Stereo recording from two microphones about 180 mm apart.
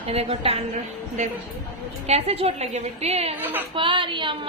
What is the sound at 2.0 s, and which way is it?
A woman's voice, 35° right (ahead or behind).